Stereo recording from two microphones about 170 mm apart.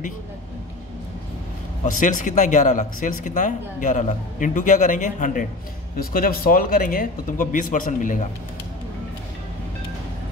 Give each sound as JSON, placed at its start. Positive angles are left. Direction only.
{"t": 1.9, "sound": "speech", "side_deg": 50}